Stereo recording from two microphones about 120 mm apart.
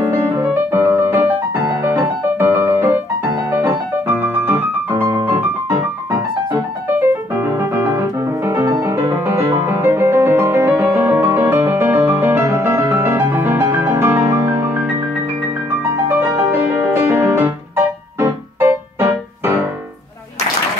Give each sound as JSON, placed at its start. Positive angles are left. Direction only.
{"t": 0.0, "sound": "music", "side_deg": -20}
{"t": 16.2, "sound": "music", "side_deg": -15}